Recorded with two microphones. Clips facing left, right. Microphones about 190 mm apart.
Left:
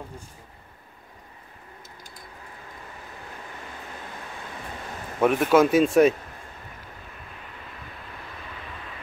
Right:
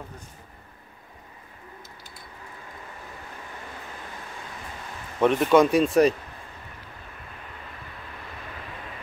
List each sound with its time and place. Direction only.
5.2 s speech: 5° left (ahead or behind)